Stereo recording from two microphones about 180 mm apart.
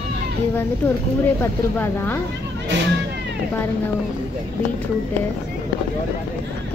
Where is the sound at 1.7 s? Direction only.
10° left (ahead or behind).